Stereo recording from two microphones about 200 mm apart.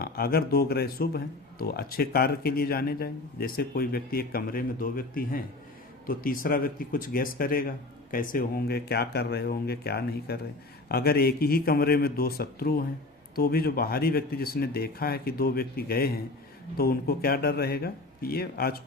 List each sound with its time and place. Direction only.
0.0 s speech: 50° left (ahead or behind)